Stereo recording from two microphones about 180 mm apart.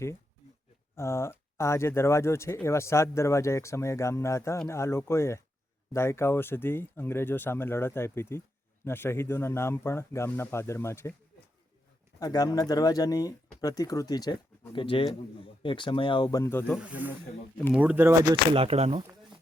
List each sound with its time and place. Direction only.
0.9 s speech: 15° left (ahead or behind)
12.2 s speech: 20° left (ahead or behind)
16.7 s speech: 5° right (ahead or behind)
18.5 s speech: 35° right (ahead or behind)